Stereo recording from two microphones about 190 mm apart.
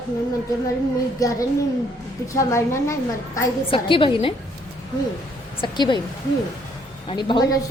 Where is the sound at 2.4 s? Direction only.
15° left (ahead or behind).